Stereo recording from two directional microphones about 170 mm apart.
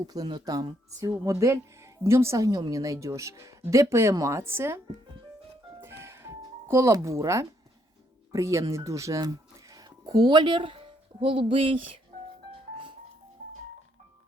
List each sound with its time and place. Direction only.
0.1 s speech: 25° right (ahead or behind)
5.8 s music: 15° right (ahead or behind)
8.3 s speech: 20° right (ahead or behind)